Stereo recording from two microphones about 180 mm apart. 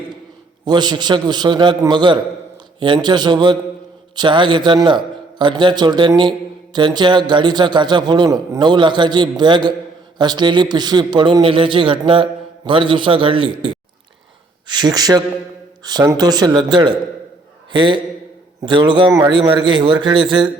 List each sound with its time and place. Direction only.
0.6 s a man's voice: 25° right (ahead or behind)
14.7 s a man's voice: 20° right (ahead or behind)